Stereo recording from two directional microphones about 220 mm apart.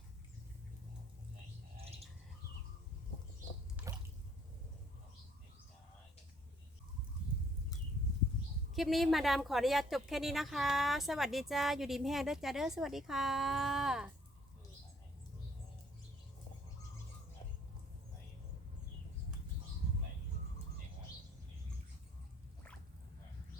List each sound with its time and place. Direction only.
1.7 s a sound: 25° right (ahead or behind)
3.8 s water: 5° right (ahead or behind)
8.7 s a woman's voice: centre (ahead or behind)